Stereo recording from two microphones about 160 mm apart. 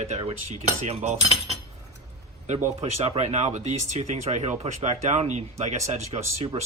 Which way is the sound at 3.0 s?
40° right (ahead or behind).